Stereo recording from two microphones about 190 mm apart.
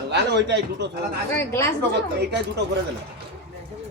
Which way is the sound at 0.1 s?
65° right (ahead or behind).